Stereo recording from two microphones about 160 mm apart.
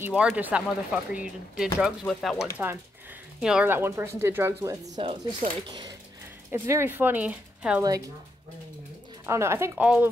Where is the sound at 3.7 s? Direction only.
15° right (ahead or behind).